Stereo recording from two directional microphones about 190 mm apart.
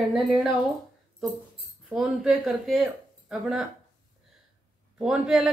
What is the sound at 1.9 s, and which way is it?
Speech, 5° right (ahead or behind).